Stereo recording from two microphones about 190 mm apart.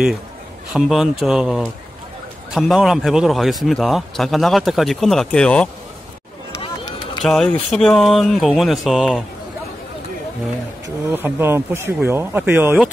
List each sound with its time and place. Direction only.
0.7 s a man's voice: centre (ahead or behind)
6.6 s run: 25° left (ahead or behind)
7.2 s a man's voice: centre (ahead or behind)
11.1 s speech: 10° right (ahead or behind)